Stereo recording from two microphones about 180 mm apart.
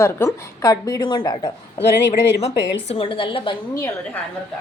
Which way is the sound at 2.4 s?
35° left (ahead or behind).